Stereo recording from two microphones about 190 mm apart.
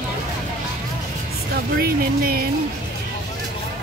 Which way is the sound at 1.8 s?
50° right (ahead or behind).